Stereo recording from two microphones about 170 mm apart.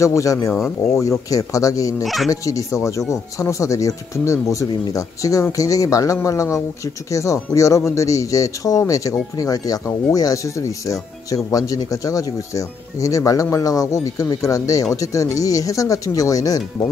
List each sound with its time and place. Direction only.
0.0 s speech: 20° left (ahead or behind)
2.0 s speech: centre (ahead or behind)
2.4 s speech: 20° left (ahead or behind)